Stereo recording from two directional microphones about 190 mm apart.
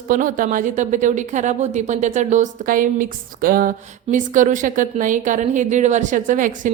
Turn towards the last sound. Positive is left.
turn(degrees=-45)  # may be behind; listen again after turning